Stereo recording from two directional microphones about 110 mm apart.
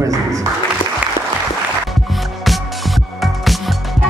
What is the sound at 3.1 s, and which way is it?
Music, centre (ahead or behind).